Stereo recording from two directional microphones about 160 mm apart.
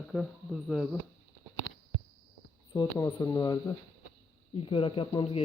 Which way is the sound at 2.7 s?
20° left (ahead or behind).